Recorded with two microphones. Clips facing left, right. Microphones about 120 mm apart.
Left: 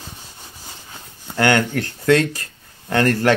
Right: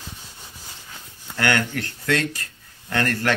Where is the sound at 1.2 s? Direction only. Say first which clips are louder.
Left 5 dB; 30° left (ahead or behind).